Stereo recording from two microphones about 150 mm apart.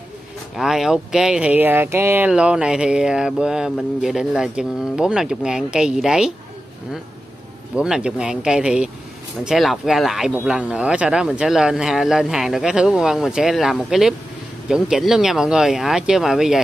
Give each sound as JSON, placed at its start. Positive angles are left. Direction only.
{"t": 0.6, "sound": "speech", "side_deg": -5}
{"t": 7.7, "sound": "speech", "side_deg": -5}